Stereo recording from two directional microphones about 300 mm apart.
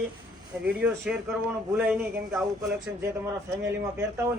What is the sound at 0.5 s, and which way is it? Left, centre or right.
Speech, centre.